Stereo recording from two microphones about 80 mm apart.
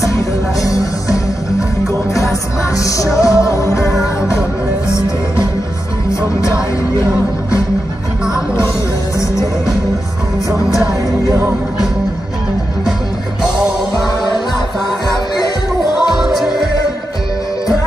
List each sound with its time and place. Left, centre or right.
2.8 s music: left
11.2 s music: right
13.6 s music: centre
16.0 s music: centre